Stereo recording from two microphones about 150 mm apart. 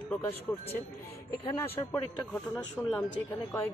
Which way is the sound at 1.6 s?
10° left (ahead or behind).